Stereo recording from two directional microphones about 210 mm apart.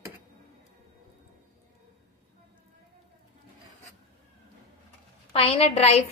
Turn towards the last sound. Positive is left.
turn(degrees=30)  # may be behind; listen again after turning